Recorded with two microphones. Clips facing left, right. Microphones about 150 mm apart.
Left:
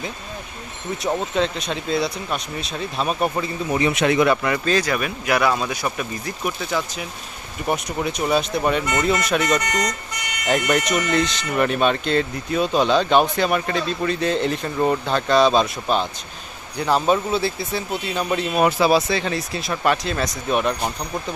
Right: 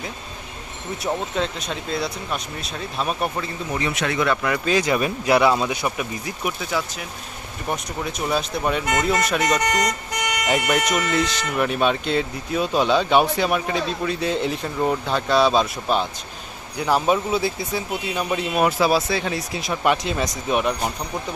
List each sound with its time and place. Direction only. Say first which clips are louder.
1.0 s speech: left 3 dB; 5° right (ahead or behind)
3.3 s speech: left 4 dB; 15° left (ahead or behind)
4.3 s speech: left 2 dB; centre (ahead or behind)
4.8 s speech: right 3 dB; 25° right (ahead or behind)